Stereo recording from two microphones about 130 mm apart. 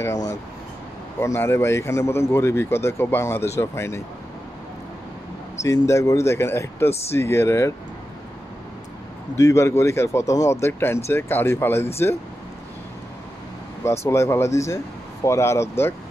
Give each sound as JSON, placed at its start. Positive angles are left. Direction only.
{"t": 0.0, "sound": "speech", "side_deg": 30}
{"t": 5.6, "sound": "speech", "side_deg": 20}
{"t": 9.4, "sound": "speech", "side_deg": 20}
{"t": 13.8, "sound": "speech", "side_deg": 20}